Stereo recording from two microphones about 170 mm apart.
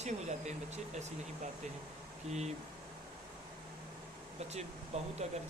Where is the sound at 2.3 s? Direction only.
40° right (ahead or behind).